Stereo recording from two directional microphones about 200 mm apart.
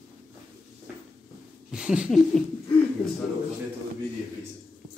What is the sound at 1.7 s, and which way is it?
Speech, 5° right (ahead or behind).